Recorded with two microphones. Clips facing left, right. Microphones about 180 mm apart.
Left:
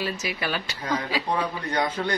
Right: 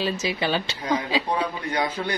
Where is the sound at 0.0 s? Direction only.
25° right (ahead or behind).